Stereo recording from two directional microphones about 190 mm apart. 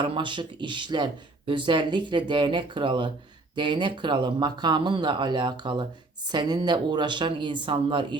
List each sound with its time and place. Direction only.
0.0 s speech: 25° right (ahead or behind)